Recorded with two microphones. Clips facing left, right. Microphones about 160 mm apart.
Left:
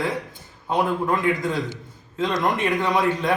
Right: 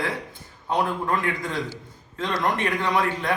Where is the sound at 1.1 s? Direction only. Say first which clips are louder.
Left 4 dB; 20° left (ahead or behind).